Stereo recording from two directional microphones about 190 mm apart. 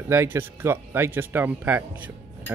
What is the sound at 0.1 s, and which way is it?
Speech, 10° right (ahead or behind).